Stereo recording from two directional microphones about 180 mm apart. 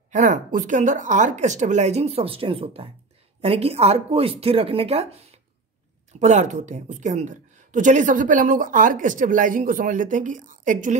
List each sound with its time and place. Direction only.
0.1 s a woman's voice: 45° right (ahead or behind)